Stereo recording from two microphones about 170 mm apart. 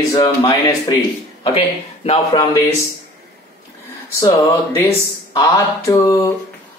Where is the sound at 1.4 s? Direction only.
35° left (ahead or behind).